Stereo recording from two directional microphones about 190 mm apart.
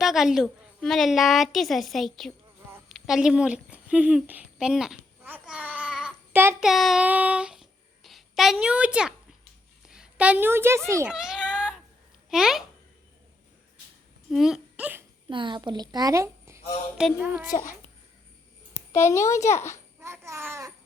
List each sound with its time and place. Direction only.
0.0 s a woman's voice: centre (ahead or behind)
2.9 s a sound: 5° right (ahead or behind)
6.7 s a woman's voice: centre (ahead or behind)
11.1 s a sound: 5° right (ahead or behind)
12.3 s a woman's voice: centre (ahead or behind)
14.3 s speech: centre (ahead or behind)
15.3 s a woman's voice: 25° right (ahead or behind); by 17.4 s 10° right (ahead or behind)
17.5 s a child's voice: 15° left (ahead or behind)
18.9 s a child's voice: 15° left (ahead or behind)
20.0 s a child's voice: 15° right (ahead or behind)